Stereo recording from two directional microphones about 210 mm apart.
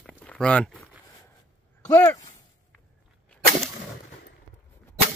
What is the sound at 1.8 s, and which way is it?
Speech, 15° left (ahead or behind).